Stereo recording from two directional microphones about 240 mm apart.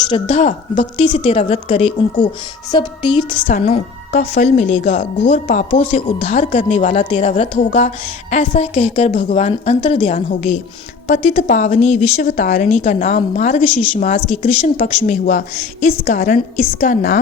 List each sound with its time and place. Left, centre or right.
0.1 s speech: left
2.7 s speech: centre
3.4 s a woman's voice: left